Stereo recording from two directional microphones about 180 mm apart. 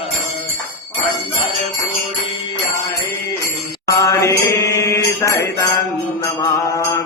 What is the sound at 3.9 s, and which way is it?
Mantra, 15° left (ahead or behind).